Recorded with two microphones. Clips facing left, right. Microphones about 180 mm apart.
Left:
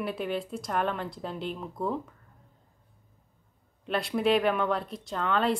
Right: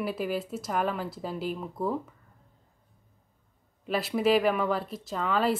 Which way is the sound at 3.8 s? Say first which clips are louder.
Right 1 dB; centre (ahead or behind).